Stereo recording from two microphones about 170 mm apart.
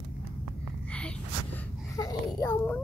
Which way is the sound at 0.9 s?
5° left (ahead or behind).